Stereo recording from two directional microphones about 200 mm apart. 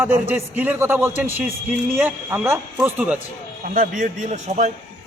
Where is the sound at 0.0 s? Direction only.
10° right (ahead or behind).